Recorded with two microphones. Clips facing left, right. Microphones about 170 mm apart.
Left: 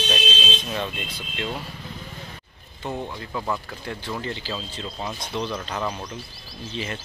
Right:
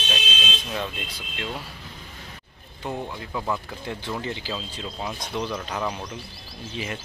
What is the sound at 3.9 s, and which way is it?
Speech, 15° right (ahead or behind).